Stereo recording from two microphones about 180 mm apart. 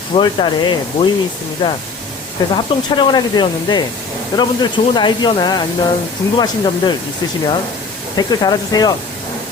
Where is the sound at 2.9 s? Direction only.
25° left (ahead or behind).